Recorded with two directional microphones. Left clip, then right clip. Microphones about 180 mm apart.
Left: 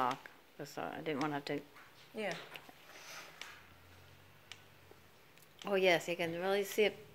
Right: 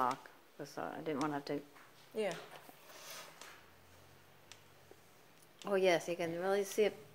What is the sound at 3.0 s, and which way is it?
Sniff, 35° right (ahead or behind).